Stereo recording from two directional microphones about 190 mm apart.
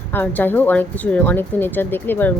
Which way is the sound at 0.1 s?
10° left (ahead or behind).